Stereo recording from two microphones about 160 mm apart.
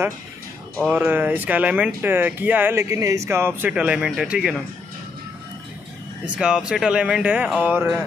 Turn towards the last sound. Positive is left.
turn(degrees=-10)  # may be behind; listen again after turning